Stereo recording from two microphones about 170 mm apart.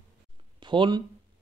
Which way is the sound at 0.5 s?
25° right (ahead or behind).